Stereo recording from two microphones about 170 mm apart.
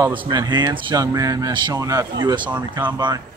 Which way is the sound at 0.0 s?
25° right (ahead or behind).